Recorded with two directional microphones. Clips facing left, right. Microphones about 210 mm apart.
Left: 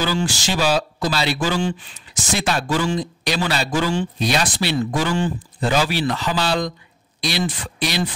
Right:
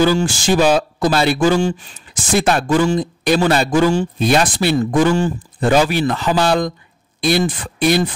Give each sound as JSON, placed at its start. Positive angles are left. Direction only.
{"t": 0.0, "sound": "speech", "side_deg": -50}